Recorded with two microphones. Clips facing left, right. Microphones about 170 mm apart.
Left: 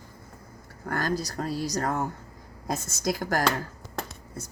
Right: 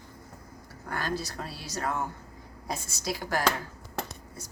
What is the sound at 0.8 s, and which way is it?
Speech, 45° left (ahead or behind).